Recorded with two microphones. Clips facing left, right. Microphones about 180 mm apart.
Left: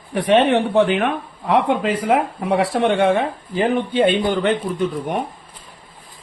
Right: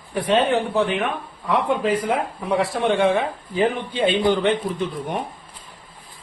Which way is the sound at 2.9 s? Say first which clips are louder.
Left 2 dB; 60° left (ahead or behind).